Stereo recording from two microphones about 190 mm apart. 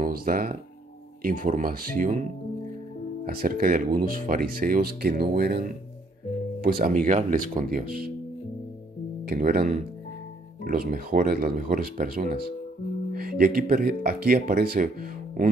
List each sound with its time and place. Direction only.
0.0 s speech: 50° right (ahead or behind)
3.3 s speech: 50° right (ahead or behind)
6.6 s speech: 50° right (ahead or behind)
9.2 s speech: 50° right (ahead or behind)